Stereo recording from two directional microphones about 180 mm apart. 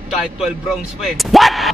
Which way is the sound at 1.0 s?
Centre (ahead or behind).